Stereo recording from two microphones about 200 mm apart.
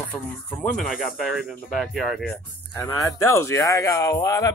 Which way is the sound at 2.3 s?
15° left (ahead or behind).